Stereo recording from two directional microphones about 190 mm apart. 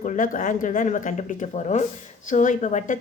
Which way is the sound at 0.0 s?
45° left (ahead or behind).